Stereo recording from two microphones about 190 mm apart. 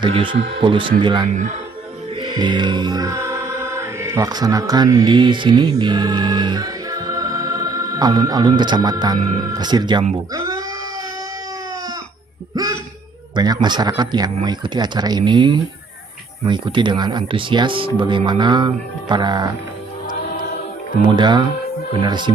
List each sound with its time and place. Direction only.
0.0 s speech: 25° right (ahead or behind)
2.1 s music: 25° right (ahead or behind)
9.4 s speech: 20° right (ahead or behind)
10.3 s a sound: 20° right (ahead or behind)
12.6 s speech: 20° right (ahead or behind)
21.0 s speech: 25° right (ahead or behind)